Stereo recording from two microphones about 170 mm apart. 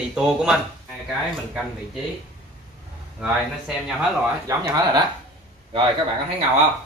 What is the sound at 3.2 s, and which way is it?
Speech, centre (ahead or behind).